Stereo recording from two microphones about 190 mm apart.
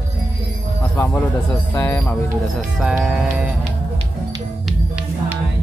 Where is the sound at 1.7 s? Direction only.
10° left (ahead or behind).